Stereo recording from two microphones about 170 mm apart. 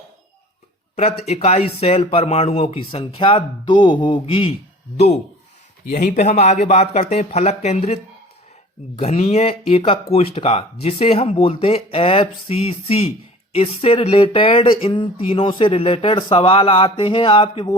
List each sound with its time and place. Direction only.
0.9 s speech: 40° left (ahead or behind)
5.9 s speech: 50° left (ahead or behind)
9.0 s speech: 35° left (ahead or behind)